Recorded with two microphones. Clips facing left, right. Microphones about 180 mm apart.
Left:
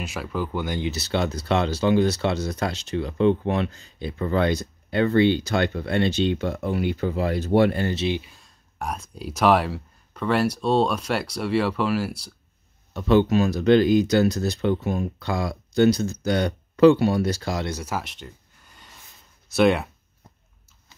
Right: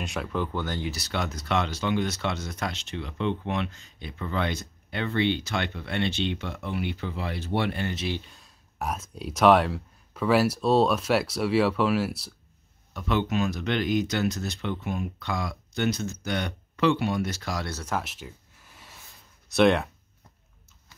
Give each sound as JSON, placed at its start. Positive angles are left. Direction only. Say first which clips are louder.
{"t": 0.0, "sound": "speech", "louder": "left 1 dB", "side_deg": 0}
{"t": 8.2, "sound": "speech", "louder": "left 1 dB", "side_deg": 0}
{"t": 12.9, "sound": "speech", "louder": "left 8 dB", "side_deg": 35}
{"t": 17.6, "sound": "speech", "louder": "left 5 dB", "side_deg": 15}
{"t": 17.9, "sound": "a sound", "louder": "left 1 dB", "side_deg": 0}